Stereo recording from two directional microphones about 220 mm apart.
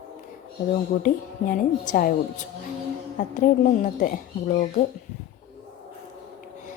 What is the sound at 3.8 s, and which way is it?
A woman's voice, 35° left (ahead or behind).